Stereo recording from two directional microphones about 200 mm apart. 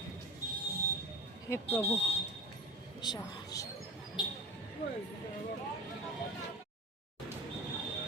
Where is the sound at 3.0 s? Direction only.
20° left (ahead or behind).